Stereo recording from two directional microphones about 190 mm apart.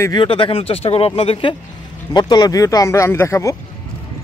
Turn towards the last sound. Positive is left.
turn(degrees=15)  # may be behind; listen again after turning